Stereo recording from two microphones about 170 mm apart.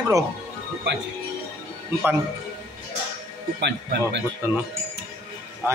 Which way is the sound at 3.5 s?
90° right.